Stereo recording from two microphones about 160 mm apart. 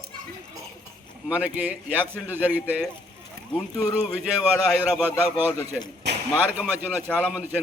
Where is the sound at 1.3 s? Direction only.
10° right (ahead or behind).